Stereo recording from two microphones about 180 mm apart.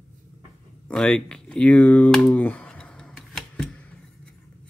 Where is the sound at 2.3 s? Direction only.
10° left (ahead or behind).